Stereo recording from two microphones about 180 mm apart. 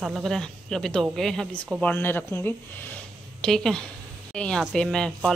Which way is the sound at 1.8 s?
10° left (ahead or behind).